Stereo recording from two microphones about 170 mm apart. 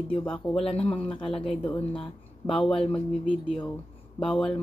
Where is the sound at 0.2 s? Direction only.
5° left (ahead or behind).